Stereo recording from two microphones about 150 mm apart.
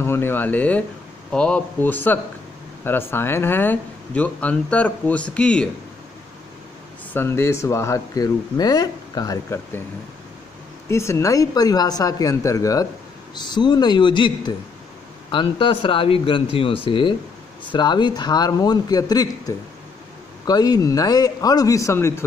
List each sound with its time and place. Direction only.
0.0 s speech: 15° left (ahead or behind)
7.2 s speech: 15° left (ahead or behind)
10.9 s speech: 20° left (ahead or behind)